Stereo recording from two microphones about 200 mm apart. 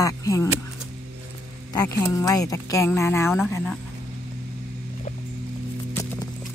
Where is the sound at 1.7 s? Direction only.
20° left (ahead or behind).